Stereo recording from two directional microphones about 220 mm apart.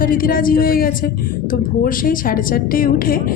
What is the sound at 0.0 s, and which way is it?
A woman's voice, 40° left (ahead or behind).